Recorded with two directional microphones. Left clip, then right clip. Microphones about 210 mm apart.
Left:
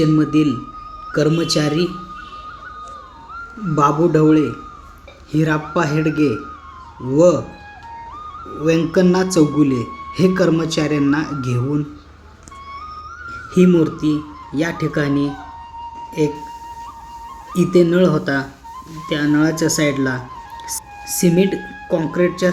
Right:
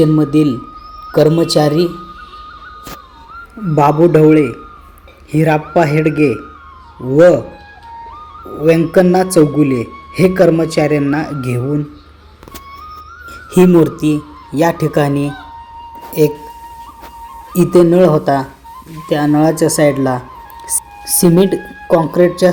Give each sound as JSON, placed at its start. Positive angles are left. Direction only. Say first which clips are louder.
{"t": 0.0, "sound": "a man's voice", "louder": "right 4 dB", "side_deg": -10}
{"t": 3.8, "sound": "a man's voice", "louder": "right 5 dB", "side_deg": -20}
{"t": 8.6, "sound": "a man's voice", "louder": "right 6 dB", "side_deg": -10}
{"t": 13.2, "sound": "a man's voice", "louder": "right 5 dB", "side_deg": -15}
{"t": 17.5, "sound": "a man's voice", "louder": "right 5 dB", "side_deg": -10}